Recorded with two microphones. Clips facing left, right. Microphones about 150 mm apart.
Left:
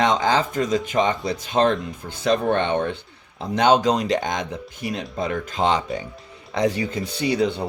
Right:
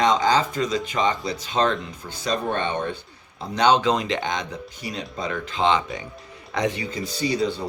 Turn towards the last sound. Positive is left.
turn(degrees=60)  # may be behind; listen again after turning